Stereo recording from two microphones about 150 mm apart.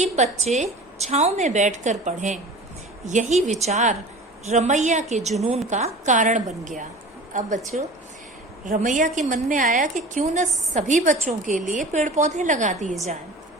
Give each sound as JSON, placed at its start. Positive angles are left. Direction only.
{"t": 0.0, "sound": "a woman's voice", "side_deg": -50}